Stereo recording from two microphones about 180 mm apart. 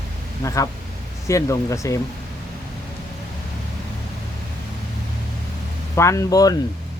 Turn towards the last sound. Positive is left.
turn(degrees=20)  # may be behind; listen again after turning